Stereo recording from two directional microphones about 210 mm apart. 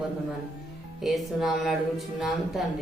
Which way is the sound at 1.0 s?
Centre (ahead or behind).